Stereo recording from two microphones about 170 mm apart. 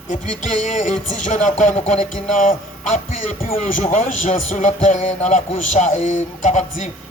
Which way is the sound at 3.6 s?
40° left (ahead or behind).